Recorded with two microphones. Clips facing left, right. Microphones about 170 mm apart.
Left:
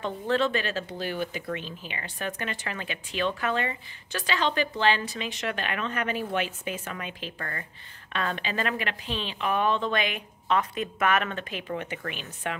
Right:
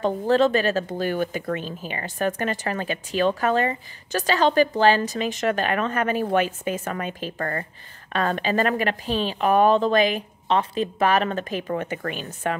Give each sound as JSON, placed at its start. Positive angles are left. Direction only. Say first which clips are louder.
{"t": 0.0, "sound": "a woman's voice", "louder": "right 7 dB", "side_deg": -40}